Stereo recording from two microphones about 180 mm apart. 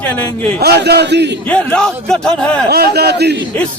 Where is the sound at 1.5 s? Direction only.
5° left (ahead or behind).